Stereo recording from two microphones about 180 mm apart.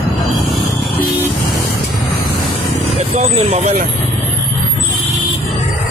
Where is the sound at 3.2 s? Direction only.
40° right (ahead or behind).